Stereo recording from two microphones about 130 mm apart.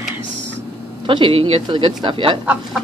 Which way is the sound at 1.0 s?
40° right (ahead or behind).